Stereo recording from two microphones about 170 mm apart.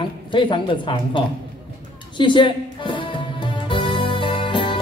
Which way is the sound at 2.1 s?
30° left (ahead or behind).